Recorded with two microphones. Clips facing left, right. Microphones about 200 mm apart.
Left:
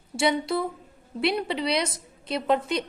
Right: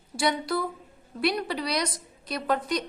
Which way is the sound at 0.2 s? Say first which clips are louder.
Left 3 dB; 25° left (ahead or behind).